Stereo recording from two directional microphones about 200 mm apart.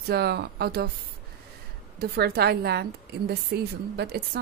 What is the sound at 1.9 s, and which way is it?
Speech, 55° right (ahead or behind).